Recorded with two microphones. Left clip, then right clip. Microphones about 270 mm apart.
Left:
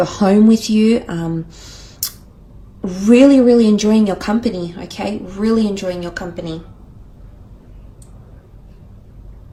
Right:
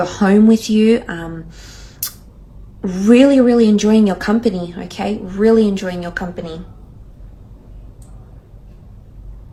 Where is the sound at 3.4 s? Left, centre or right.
Centre.